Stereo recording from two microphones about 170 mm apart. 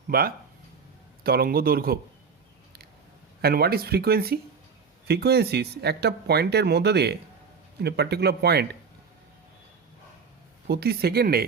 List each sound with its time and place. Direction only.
0.1 s speech: 60° right (ahead or behind)
3.4 s speech: 65° right (ahead or behind)
10.7 s speech: 70° right (ahead or behind)